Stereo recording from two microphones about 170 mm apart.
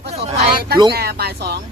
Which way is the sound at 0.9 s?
65° right (ahead or behind).